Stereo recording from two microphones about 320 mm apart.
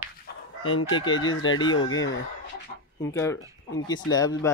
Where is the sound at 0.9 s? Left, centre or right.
Centre.